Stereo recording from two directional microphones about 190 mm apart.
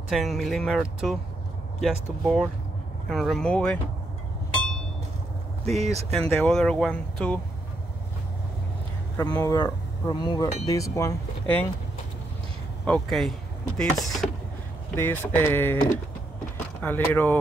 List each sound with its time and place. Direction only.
0.1 s speech: centre (ahead or behind)
5.8 s speech: 35° right (ahead or behind)
6.1 s speech: 5° left (ahead or behind)
9.2 s speech: 15° left (ahead or behind)
12.8 s speech: 5° left (ahead or behind)
16.5 s door: 10° left (ahead or behind)
17.1 s speech: 10° left (ahead or behind)